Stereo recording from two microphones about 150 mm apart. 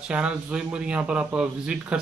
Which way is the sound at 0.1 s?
5° right (ahead or behind).